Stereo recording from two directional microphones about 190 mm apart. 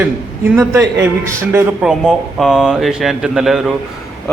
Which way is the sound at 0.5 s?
15° right (ahead or behind).